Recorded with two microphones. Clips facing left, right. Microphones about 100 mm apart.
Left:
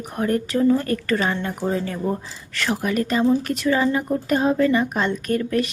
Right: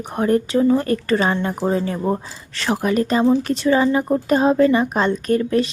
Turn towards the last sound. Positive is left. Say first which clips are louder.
# right 4 dB
turn(degrees=-30)  # may be behind; listen again after turning